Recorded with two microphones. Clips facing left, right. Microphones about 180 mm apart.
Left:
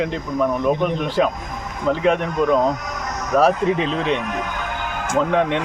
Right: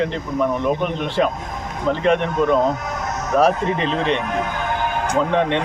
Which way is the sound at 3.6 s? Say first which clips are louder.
Left 1 dB; 65° right (ahead or behind).